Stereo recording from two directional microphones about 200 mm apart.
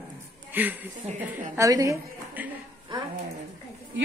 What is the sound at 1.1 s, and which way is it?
Speech, 35° right (ahead or behind).